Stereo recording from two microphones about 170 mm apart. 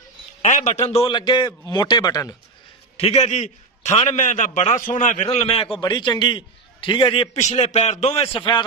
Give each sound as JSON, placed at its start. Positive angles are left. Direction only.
{"t": 0.4, "sound": "a man's voice", "side_deg": 45}
{"t": 3.0, "sound": "a man's voice", "side_deg": 35}
{"t": 7.3, "sound": "a man's voice", "side_deg": 40}